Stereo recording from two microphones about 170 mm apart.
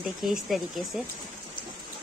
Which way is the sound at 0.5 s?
Centre (ahead or behind).